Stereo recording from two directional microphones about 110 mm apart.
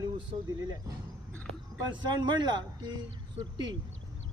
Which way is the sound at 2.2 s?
40° right (ahead or behind).